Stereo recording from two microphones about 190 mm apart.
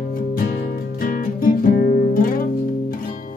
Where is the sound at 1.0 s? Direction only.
45° left (ahead or behind).